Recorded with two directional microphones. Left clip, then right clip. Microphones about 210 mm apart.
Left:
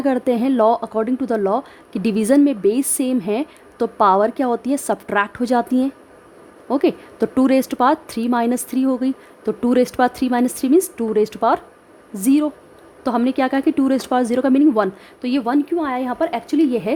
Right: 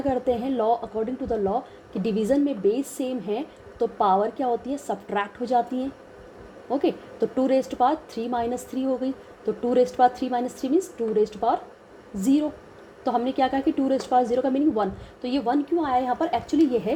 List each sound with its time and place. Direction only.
0.0 s a woman's voice: 35° left (ahead or behind)